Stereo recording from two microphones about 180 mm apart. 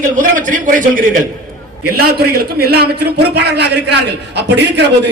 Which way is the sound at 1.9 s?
60° right (ahead or behind).